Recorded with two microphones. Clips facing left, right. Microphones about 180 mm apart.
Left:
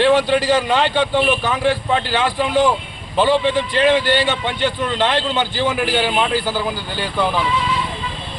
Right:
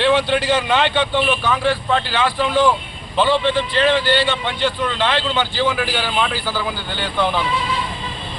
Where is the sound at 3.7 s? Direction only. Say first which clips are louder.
Left 2 dB; 15° left (ahead or behind).